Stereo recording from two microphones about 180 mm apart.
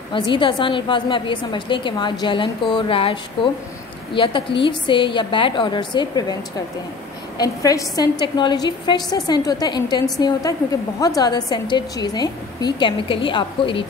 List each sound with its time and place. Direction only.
0.1 s a woman's voice: 30° left (ahead or behind)
7.3 s a woman's voice: 20° left (ahead or behind)